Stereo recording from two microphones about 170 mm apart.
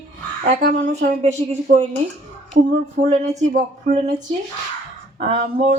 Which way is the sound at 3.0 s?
50° right (ahead or behind).